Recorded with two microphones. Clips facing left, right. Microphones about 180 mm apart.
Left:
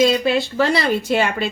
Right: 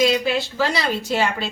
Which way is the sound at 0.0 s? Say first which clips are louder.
Left 3 dB; 60° left (ahead or behind).